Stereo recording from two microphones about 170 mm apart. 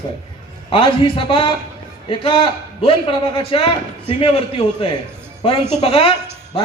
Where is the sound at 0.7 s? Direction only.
30° left (ahead or behind).